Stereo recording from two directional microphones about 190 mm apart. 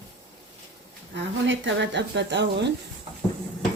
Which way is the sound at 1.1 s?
75° right (ahead or behind).